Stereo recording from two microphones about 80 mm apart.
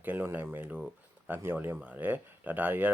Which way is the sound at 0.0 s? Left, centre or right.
Right.